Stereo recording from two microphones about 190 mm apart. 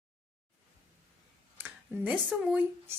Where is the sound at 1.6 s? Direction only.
5° right (ahead or behind).